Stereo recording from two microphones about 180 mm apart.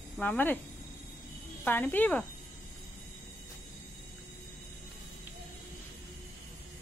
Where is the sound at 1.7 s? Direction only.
10° left (ahead or behind).